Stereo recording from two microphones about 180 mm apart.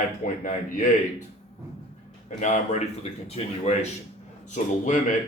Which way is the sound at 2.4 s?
40° left (ahead or behind).